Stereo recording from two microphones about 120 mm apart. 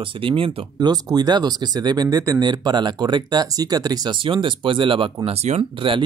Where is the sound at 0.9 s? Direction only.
35° right (ahead or behind).